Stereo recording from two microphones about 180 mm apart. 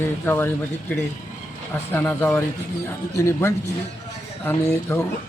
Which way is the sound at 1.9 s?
10° left (ahead or behind).